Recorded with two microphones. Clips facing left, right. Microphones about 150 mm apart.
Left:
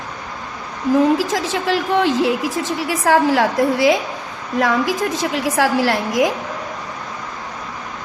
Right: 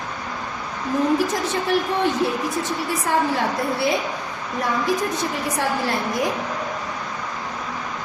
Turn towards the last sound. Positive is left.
turn(degrees=90)